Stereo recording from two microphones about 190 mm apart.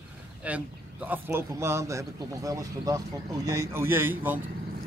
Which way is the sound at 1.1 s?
10° right (ahead or behind).